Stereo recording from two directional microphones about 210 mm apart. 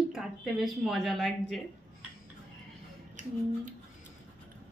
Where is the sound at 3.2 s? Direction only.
35° right (ahead or behind).